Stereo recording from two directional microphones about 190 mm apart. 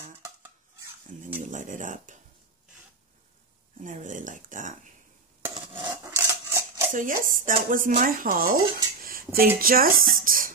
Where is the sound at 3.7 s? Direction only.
40° right (ahead or behind).